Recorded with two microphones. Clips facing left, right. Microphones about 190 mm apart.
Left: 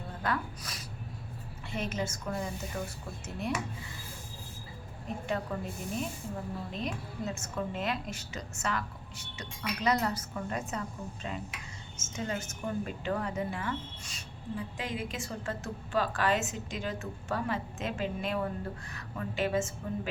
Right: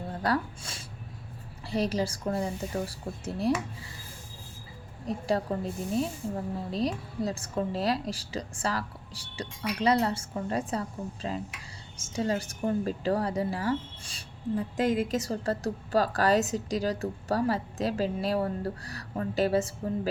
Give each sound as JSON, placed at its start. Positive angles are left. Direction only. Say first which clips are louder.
{"t": 0.1, "sound": "a sound", "louder": "right 5 dB", "side_deg": -35}
{"t": 1.6, "sound": "speech", "louder": "right 6 dB", "side_deg": -35}
{"t": 5.0, "sound": "speech", "louder": "right 6 dB", "side_deg": -35}